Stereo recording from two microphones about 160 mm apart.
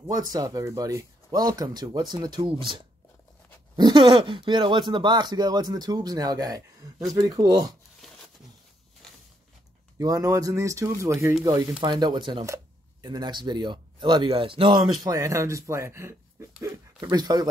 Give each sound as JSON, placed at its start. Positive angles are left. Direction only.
{"t": 0.0, "sound": "speech", "side_deg": -25}
{"t": 9.9, "sound": "speech", "side_deg": -20}
{"t": 15.0, "sound": "speech", "side_deg": -20}